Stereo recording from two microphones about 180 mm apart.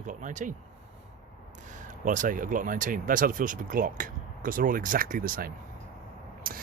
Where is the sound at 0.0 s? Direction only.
45° right (ahead or behind).